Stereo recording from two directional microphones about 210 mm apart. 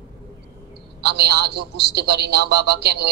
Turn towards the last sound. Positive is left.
turn(degrees=-50)  # may be behind; listen again after turning